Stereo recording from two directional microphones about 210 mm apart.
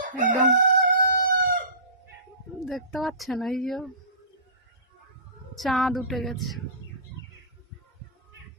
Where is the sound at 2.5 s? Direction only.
Centre (ahead or behind).